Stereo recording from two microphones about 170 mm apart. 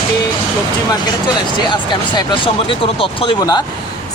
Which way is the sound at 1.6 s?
25° left (ahead or behind).